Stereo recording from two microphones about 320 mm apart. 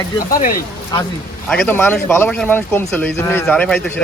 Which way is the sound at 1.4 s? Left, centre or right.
Centre.